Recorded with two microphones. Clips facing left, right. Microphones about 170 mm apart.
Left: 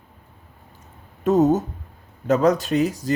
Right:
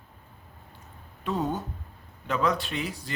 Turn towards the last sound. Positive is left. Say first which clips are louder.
# left 12 dB
turn(degrees=40)  # may be behind; listen again after turning